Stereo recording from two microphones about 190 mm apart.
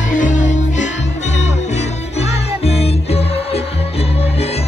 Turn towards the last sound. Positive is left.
turn(degrees=30)  # may be behind; listen again after turning